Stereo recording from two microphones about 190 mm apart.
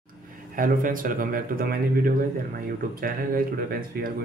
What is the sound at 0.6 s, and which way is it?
Speech, 45° right (ahead or behind).